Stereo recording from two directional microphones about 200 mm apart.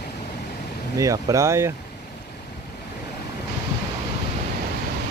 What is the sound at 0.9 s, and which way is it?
Speech, 15° right (ahead or behind).